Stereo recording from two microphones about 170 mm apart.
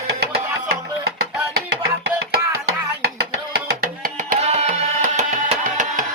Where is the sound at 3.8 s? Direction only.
55° right (ahead or behind).